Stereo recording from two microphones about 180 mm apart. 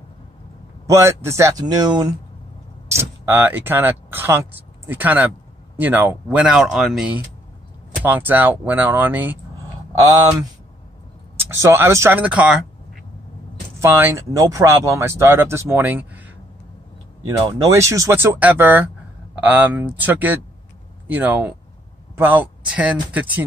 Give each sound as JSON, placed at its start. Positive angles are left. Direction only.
{"t": 0.8, "sound": "speech", "side_deg": -15}
{"t": 11.3, "sound": "speech", "side_deg": -15}
{"t": 13.7, "sound": "speech", "side_deg": -15}
{"t": 17.4, "sound": "speech", "side_deg": -20}